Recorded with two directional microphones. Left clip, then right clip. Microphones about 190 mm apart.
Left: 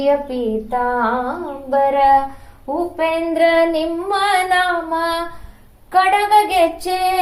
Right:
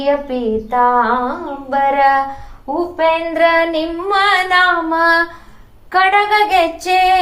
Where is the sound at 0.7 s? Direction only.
20° right (ahead or behind).